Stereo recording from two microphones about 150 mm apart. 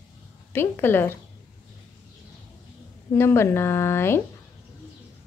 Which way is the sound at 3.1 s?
15° left (ahead or behind).